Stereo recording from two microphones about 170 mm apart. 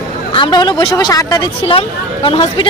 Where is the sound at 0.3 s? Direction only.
30° left (ahead or behind).